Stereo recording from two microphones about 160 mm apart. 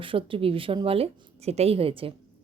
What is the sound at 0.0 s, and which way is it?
A woman's voice, 35° right (ahead or behind).